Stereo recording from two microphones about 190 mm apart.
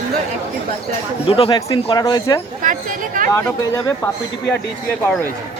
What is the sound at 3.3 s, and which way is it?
Speech, 15° left (ahead or behind).